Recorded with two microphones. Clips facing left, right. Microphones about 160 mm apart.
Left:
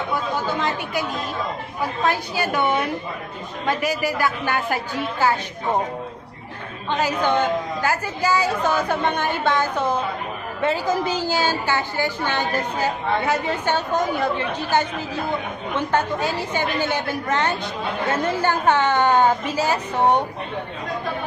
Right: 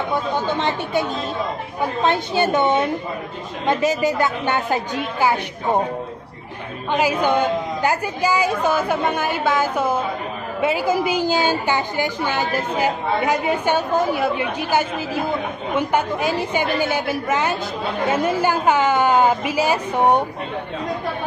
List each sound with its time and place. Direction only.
0.1 s a woman's voice: 25° right (ahead or behind)
6.9 s a woman's voice: 10° right (ahead or behind)